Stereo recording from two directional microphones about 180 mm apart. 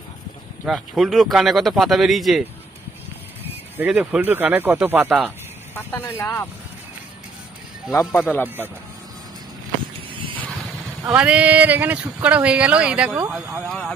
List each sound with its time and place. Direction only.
0.7 s a man's voice: centre (ahead or behind)
3.7 s speech: 5° right (ahead or behind)
5.8 s speech: 10° left (ahead or behind)
7.9 s speech: 20° left (ahead or behind)
11.1 s speech: 5° right (ahead or behind)
13.6 s a man's voice: 5° left (ahead or behind)